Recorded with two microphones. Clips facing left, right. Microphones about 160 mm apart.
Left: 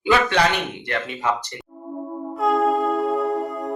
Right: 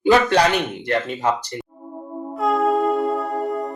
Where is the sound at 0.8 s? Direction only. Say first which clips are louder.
Right 5 dB; 40° right (ahead or behind).